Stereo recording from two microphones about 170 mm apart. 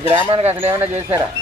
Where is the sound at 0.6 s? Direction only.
10° right (ahead or behind).